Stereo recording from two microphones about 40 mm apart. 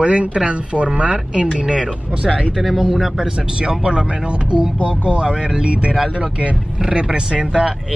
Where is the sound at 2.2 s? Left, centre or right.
Left.